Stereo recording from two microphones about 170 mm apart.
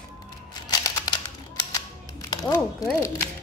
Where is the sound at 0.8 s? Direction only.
20° left (ahead or behind).